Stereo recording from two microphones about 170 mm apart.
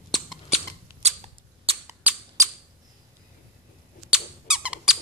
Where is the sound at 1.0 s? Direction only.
40° right (ahead or behind).